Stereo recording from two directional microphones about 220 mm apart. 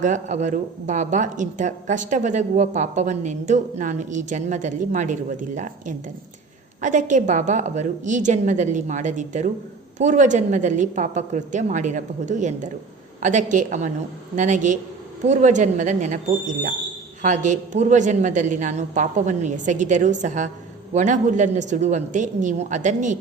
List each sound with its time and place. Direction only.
0.0 s a woman's voice: 35° right (ahead or behind)